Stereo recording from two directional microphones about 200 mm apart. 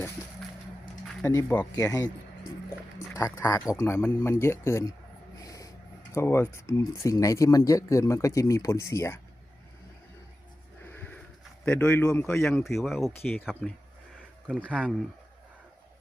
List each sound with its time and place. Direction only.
1.0 s speech: 15° left (ahead or behind)
5.4 s snort: 15° left (ahead or behind)
6.1 s speech: 15° left (ahead or behind)
10.8 s a sound: 10° left (ahead or behind)
11.6 s speech: 10° left (ahead or behind); by 14.9 s 5° right (ahead or behind)